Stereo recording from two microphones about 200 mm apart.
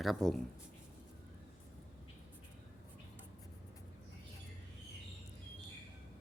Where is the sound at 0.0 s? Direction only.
Centre (ahead or behind).